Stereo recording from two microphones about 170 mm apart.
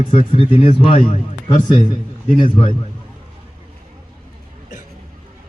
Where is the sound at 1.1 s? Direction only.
45° left (ahead or behind).